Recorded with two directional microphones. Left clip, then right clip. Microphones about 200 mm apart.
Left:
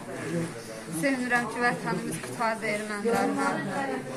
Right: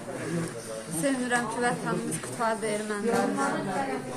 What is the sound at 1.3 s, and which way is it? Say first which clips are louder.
Speech: left 2 dB; centre (ahead or behind).